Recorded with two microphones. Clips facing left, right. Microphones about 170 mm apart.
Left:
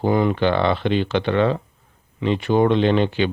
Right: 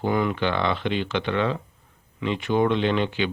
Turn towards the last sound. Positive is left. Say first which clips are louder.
# left 5 dB
turn(degrees=35)  # may be behind; listen again after turning